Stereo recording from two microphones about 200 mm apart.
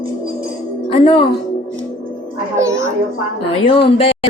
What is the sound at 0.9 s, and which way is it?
Speech, 25° left (ahead or behind).